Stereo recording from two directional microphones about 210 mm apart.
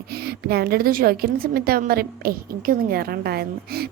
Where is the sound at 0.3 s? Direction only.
50° right (ahead or behind).